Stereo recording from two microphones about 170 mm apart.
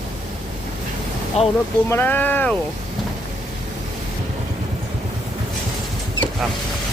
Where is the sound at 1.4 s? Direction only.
35° left (ahead or behind).